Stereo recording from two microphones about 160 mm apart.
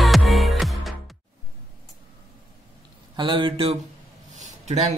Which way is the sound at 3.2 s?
30° right (ahead or behind).